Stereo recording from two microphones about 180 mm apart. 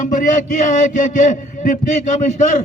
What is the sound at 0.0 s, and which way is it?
A man's voice, 45° left (ahead or behind).